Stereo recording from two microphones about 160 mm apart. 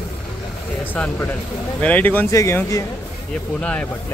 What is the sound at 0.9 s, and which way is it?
A man's voice, 10° left (ahead or behind).